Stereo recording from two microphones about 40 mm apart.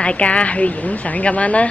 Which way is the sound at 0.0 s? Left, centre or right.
Left.